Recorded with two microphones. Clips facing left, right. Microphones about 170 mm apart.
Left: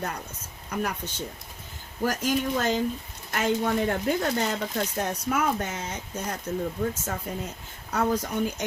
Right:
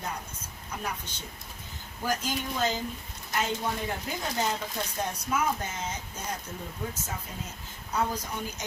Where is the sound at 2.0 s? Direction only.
70° left (ahead or behind).